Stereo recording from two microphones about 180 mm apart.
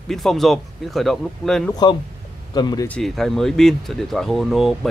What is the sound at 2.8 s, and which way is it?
Speech, 5° left (ahead or behind).